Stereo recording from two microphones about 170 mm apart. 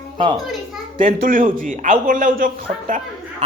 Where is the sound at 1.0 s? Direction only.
55° right (ahead or behind).